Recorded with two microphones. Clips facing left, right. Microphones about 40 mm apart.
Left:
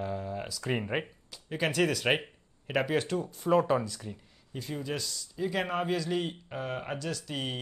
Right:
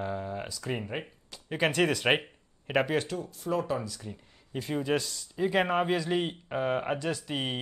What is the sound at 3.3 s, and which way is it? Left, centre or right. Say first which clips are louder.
Speech: left 5 dB; centre.